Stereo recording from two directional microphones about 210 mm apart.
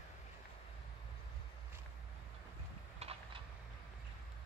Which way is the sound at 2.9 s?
30° right (ahead or behind).